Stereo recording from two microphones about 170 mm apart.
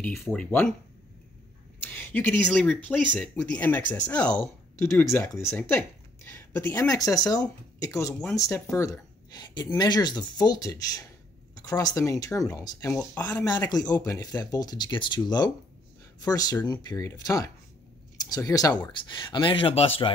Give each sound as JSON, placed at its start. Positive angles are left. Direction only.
{"t": 0.0, "sound": "speech", "side_deg": 5}
{"t": 1.8, "sound": "speech", "side_deg": 10}
{"t": 8.1, "sound": "speech", "side_deg": 5}
{"t": 13.5, "sound": "speech", "side_deg": 25}